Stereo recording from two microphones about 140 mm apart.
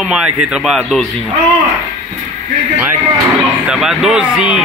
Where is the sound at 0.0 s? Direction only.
5° right (ahead or behind).